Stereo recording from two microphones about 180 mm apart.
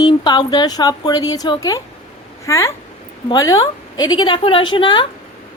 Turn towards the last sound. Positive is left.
turn(degrees=25)  # may be behind; listen again after turning